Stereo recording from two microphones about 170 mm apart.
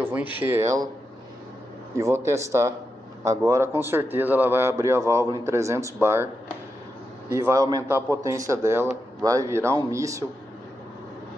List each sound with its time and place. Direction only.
0.0 s a man's voice: 10° right (ahead or behind)
2.0 s a man's voice: 15° right (ahead or behind)
7.2 s a man's voice: 15° right (ahead or behind)